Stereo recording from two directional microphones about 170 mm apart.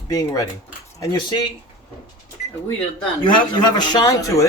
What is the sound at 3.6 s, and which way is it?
Speech, 25° left (ahead or behind).